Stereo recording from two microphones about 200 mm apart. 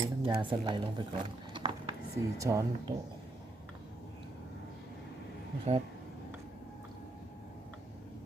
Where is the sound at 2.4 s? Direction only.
15° right (ahead or behind).